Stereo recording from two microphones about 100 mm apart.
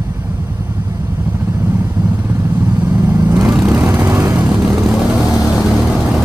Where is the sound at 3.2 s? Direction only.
30° right (ahead or behind).